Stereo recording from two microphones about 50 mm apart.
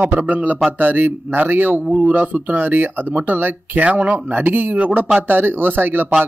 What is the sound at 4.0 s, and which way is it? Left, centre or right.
Speech, right.